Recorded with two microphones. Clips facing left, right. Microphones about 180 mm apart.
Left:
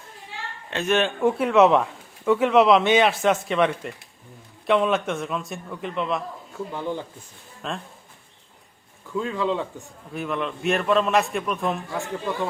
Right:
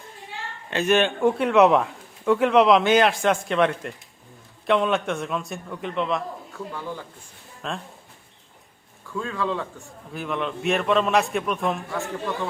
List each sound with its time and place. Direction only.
0.7 s speech: centre (ahead or behind)
6.7 s speech: 20° left (ahead or behind)
7.6 s speech: centre (ahead or behind)
9.1 s speech: 15° left (ahead or behind)
10.1 s speech: centre (ahead or behind)
11.9 s speech: 15° left (ahead or behind)